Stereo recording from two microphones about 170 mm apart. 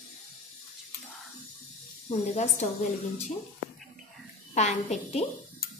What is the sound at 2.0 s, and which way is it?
Speech, 40° left (ahead or behind).